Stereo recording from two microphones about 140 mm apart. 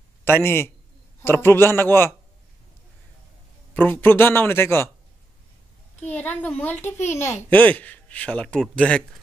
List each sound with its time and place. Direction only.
0.2 s a man's voice: 15° left (ahead or behind)
3.7 s speech: 15° left (ahead or behind)
6.0 s speech: 10° left (ahead or behind)